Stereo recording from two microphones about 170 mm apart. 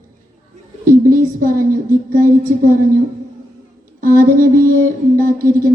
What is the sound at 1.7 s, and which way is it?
A woman's voice, 55° right (ahead or behind).